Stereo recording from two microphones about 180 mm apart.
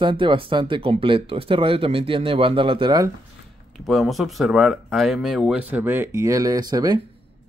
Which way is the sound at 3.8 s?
Centre (ahead or behind).